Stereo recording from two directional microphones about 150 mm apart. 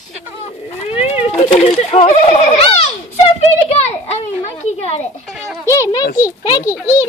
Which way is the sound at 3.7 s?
45° left (ahead or behind).